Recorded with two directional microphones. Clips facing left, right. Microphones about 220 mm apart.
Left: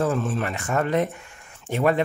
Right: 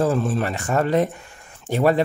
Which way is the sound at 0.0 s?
35° right (ahead or behind).